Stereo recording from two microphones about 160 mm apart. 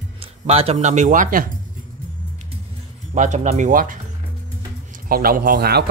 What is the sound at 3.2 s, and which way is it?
Speech, 45° right (ahead or behind).